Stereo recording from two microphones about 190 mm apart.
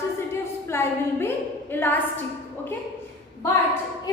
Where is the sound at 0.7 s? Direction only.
15° left (ahead or behind).